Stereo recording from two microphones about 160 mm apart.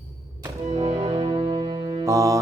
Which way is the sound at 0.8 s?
35° right (ahead or behind).